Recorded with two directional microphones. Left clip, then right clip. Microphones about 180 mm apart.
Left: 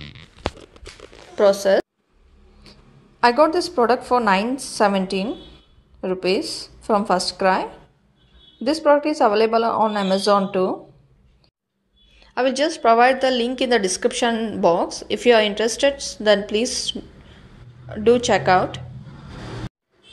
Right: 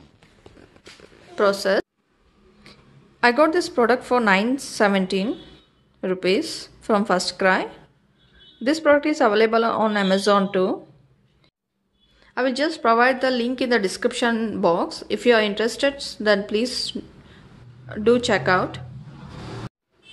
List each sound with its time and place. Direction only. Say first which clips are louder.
1.3 s speech: left 4 dB; 5° right (ahead or behind)
2.6 s a sound: even; 10° right (ahead or behind)
3.7 s a woman's voice: left 1 dB; 10° right (ahead or behind)
5.3 s a sound: right 1 dB; 15° right (ahead or behind)
6.8 s a woman's voice: left 1 dB; 15° right (ahead or behind)
12.2 s a woman's voice: left 3 dB; 10° right (ahead or behind)